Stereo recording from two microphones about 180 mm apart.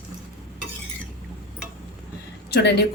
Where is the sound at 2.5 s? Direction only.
65° left (ahead or behind).